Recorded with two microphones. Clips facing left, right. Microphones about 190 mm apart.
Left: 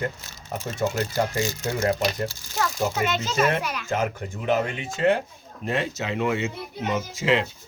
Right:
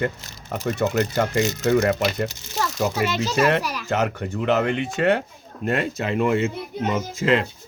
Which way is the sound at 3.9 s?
70° right (ahead or behind).